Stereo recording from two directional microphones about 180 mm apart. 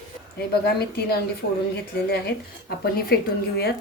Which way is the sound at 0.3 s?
60° left (ahead or behind).